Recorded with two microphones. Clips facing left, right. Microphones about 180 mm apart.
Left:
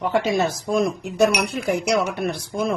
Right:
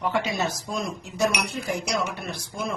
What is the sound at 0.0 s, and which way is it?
A woman's voice, 50° left (ahead or behind).